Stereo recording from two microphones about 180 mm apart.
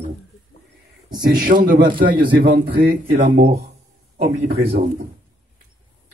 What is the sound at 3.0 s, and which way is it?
Speech, 45° right (ahead or behind).